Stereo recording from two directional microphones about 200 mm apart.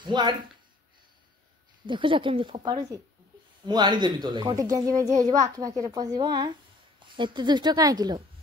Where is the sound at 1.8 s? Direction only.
25° right (ahead or behind).